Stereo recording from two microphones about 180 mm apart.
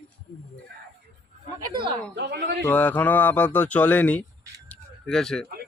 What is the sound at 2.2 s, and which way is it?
Speech, 70° right (ahead or behind).